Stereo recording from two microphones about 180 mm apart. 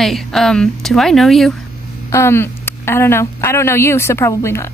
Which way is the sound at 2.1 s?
15° left (ahead or behind).